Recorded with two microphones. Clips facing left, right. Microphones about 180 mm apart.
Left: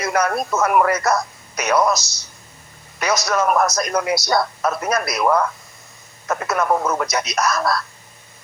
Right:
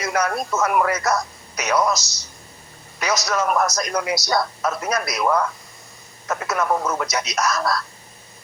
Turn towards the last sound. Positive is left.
turn(degrees=55)  # may be behind; listen again after turning